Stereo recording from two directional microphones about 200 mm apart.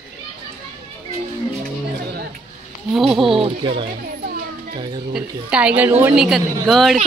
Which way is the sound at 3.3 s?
25° right (ahead or behind).